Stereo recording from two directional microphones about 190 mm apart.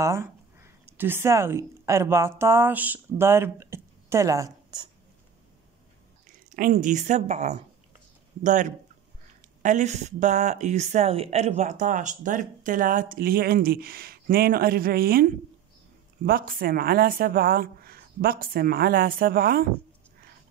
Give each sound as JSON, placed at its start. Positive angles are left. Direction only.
{"t": 0.0, "sound": "speech", "side_deg": -15}
{"t": 6.2, "sound": "speech", "side_deg": -45}